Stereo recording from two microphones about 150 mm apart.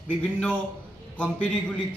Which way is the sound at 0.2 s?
10° left (ahead or behind).